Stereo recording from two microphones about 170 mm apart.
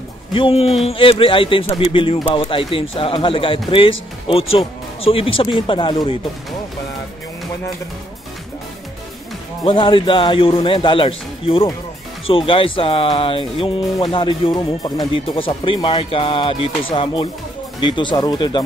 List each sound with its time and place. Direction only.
0.3 s speech: 30° left (ahead or behind)
9.7 s speech: 30° left (ahead or behind)